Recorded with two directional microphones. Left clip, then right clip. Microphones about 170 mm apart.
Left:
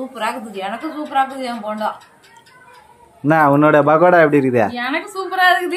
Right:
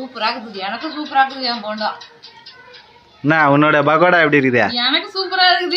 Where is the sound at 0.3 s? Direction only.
10° left (ahead or behind).